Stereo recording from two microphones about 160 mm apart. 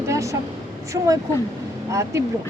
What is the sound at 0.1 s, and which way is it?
Vehicle, 20° right (ahead or behind).